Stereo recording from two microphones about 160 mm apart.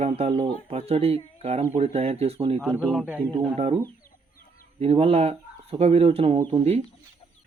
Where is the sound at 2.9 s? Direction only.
10° right (ahead or behind).